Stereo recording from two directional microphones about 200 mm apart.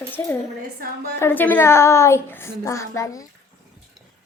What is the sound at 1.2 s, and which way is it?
A woman's voice, 10° left (ahead or behind).